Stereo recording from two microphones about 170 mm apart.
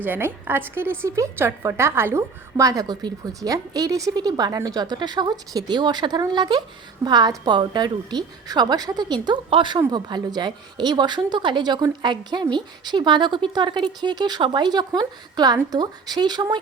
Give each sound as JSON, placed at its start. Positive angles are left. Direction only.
{"t": 0.0, "sound": "a woman's voice", "side_deg": -10}